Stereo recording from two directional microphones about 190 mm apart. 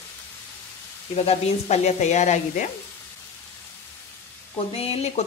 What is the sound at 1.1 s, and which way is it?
Sizzle, 35° left (ahead or behind).